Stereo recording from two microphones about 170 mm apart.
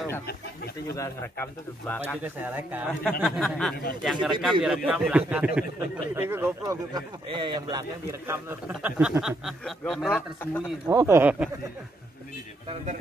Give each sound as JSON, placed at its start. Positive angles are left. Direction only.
{"t": 0.9, "sound": "speech", "side_deg": 15}
{"t": 2.2, "sound": "speech", "side_deg": -10}
{"t": 3.0, "sound": "a man's voice", "side_deg": 5}
{"t": 8.3, "sound": "speech", "side_deg": -10}
{"t": 9.4, "sound": "a man's voice", "side_deg": 0}
{"t": 10.9, "sound": "speech", "side_deg": -15}